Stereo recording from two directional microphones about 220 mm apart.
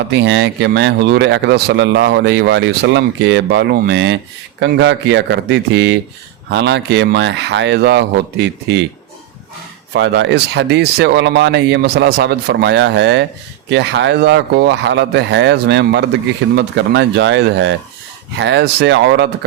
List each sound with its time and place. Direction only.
0.1 s speech: 50° right (ahead or behind)
9.9 s speech: 55° right (ahead or behind)